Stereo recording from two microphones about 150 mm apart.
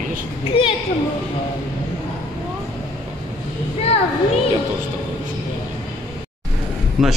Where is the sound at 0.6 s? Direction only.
40° left (ahead or behind).